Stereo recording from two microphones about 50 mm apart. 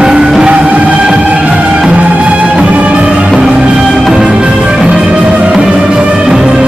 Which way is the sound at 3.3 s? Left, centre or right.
Centre.